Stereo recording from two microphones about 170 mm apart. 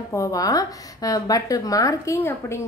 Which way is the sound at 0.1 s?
20° left (ahead or behind).